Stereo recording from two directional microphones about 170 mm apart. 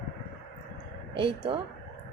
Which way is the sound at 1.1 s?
30° right (ahead or behind).